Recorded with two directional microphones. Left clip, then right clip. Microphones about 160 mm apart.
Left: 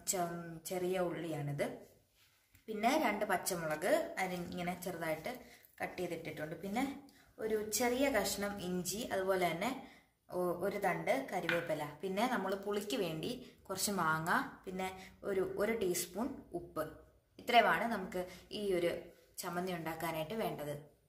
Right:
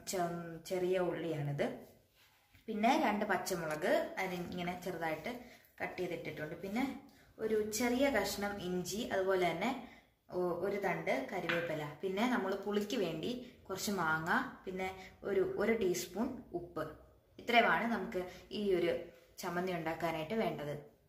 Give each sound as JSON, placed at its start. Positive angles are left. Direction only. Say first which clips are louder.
{"t": 0.1, "sound": "a woman's voice", "louder": "right 1 dB", "side_deg": 5}
{"t": 17.5, "sound": "a woman's voice", "louder": "even", "side_deg": 20}